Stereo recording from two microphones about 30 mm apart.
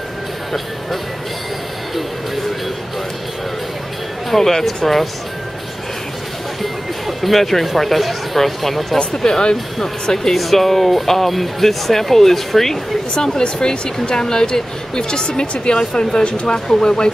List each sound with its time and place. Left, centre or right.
4.3 s speech: centre
6.6 s speech: centre
8.9 s speech: left
10.3 s speech: centre
13.1 s speech: left